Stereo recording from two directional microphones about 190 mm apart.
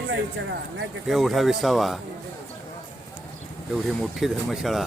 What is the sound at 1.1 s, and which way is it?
Speech, centre (ahead or behind).